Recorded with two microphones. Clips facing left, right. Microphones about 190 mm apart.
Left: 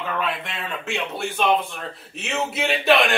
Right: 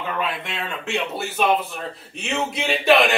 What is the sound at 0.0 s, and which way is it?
Speech, centre (ahead or behind).